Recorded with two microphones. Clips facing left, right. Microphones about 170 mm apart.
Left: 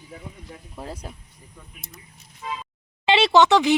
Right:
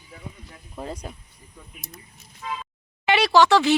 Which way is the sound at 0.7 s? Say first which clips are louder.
Right 3 dB; 5° left (ahead or behind).